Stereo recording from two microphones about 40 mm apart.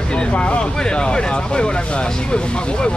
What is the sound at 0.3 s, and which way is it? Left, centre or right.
Speech, left.